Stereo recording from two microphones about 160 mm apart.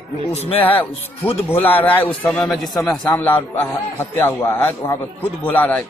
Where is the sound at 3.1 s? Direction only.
10° left (ahead or behind).